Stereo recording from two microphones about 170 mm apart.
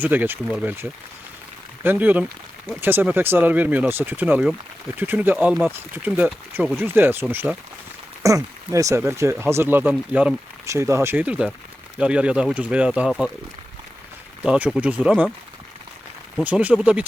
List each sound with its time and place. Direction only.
0.0 s speech: 10° right (ahead or behind)
14.4 s speech: 5° right (ahead or behind)
16.4 s speech: 10° right (ahead or behind)